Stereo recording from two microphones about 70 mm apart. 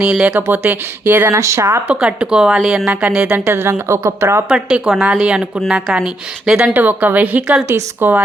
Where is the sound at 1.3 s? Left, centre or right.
Right.